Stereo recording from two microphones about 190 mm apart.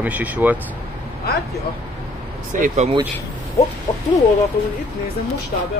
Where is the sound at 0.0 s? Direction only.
10° right (ahead or behind).